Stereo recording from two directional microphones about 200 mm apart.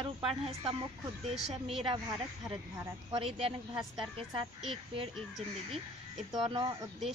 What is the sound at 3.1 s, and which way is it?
Speech, 30° right (ahead or behind).